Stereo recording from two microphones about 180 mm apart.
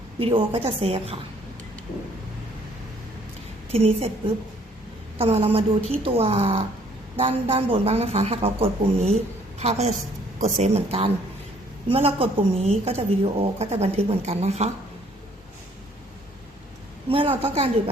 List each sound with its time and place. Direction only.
0.2 s a woman's voice: 30° right (ahead or behind)
3.7 s a woman's voice: 35° right (ahead or behind)
5.1 s a woman's voice: 30° right (ahead or behind)
17.1 s a woman's voice: 30° right (ahead or behind)